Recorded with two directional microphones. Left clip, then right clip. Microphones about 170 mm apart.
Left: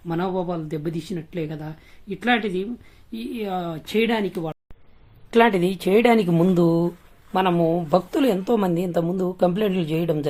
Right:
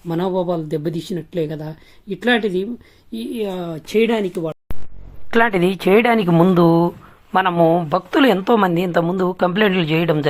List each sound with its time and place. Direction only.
0.1 s a woman's voice: 25° right (ahead or behind)